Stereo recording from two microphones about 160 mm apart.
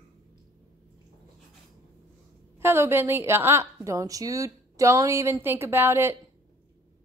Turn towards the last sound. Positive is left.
turn(degrees=-15)  # may be behind; listen again after turning